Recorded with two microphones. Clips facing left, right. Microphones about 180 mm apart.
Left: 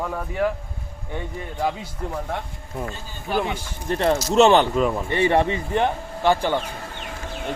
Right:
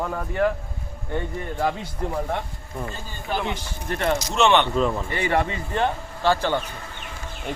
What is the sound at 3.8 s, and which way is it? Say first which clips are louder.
Speech: left 4 dB; 30° left (ahead or behind).